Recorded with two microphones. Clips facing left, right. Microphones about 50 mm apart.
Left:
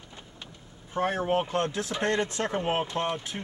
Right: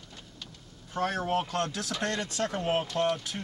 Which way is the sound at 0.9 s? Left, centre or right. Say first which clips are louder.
Left 3 dB; left.